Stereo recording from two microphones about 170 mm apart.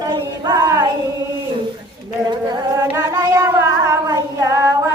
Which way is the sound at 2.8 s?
20° right (ahead or behind).